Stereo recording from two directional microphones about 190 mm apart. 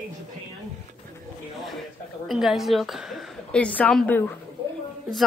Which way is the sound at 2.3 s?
Centre (ahead or behind).